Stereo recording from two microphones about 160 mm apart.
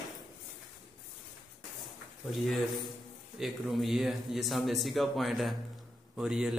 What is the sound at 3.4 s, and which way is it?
A man's voice, centre (ahead or behind).